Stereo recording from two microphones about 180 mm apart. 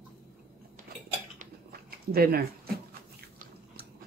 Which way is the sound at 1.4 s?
55° right (ahead or behind).